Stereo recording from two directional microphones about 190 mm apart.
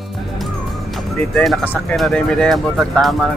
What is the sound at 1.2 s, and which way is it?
Speech, 5° left (ahead or behind).